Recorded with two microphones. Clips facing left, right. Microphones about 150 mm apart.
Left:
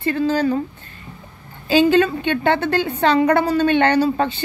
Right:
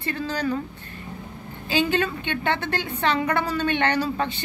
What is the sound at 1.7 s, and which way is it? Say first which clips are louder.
A woman's voice: left 9 dB; 35° left (ahead or behind).